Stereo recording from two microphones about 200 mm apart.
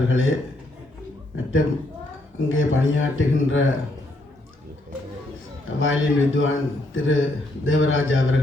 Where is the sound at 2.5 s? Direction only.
80° left.